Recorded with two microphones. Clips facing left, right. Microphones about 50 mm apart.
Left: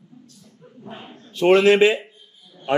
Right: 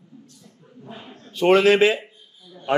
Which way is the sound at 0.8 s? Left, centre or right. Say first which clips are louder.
Left 2 dB; left.